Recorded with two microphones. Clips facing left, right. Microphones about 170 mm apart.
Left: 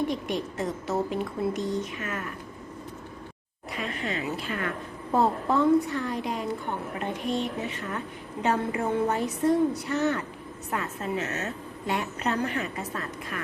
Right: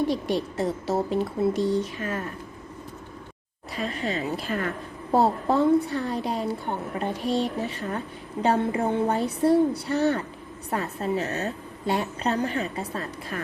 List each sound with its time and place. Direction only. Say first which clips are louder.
0.1 s a woman's voice: right 4 dB; 35° right (ahead or behind)
3.8 s a woman's voice: right 3 dB; 35° right (ahead or behind)